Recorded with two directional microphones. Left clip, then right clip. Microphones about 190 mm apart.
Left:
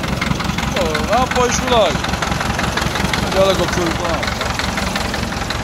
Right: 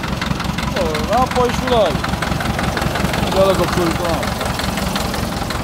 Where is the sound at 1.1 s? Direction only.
15° right (ahead or behind).